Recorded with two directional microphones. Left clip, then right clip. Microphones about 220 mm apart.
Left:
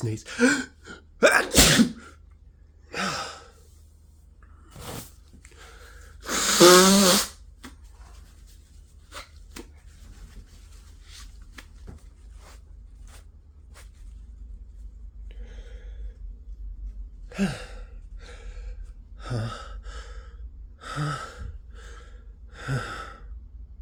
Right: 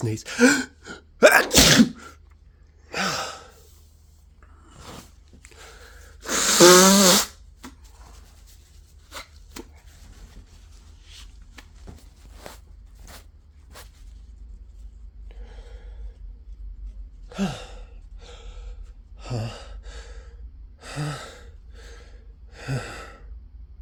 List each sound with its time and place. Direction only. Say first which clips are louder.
0.0 s speech: right 4 dB; 45° right (ahead or behind)
2.8 s gasp: right 3 dB; 50° right (ahead or behind)
5.4 s wheeze: right 3 dB; 40° right (ahead or behind)
9.0 s chopping: right 3 dB; 45° right (ahead or behind)
11.0 s a sound: right 1 dB; 20° right (ahead or behind)
11.9 s a sound: right 2 dB; 35° right (ahead or behind)
15.3 s a sound: right 2 dB; 30° right (ahead or behind)
17.2 s sigh: even; 20° right (ahead or behind)
20.7 s gasp: left 2 dB; 25° right (ahead or behind)